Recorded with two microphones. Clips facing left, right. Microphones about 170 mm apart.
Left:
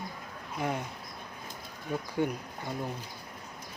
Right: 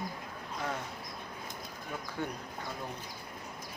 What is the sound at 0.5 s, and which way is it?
Speech, 15° left (ahead or behind).